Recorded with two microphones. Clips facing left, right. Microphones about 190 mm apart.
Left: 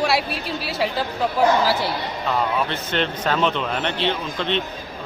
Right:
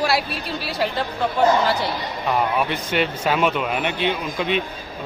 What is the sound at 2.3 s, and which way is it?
A man's voice, 15° right (ahead or behind).